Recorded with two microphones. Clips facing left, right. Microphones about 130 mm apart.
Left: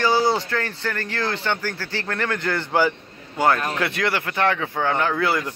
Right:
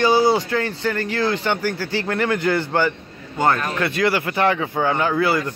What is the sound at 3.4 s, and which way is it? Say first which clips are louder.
Speech: right 1 dB; 5° left (ahead or behind).